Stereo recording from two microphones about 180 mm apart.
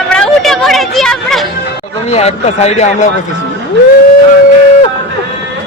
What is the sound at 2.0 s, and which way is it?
Speech, 35° left (ahead or behind).